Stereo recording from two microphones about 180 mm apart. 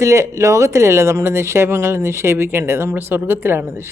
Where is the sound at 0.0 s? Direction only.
15° right (ahead or behind).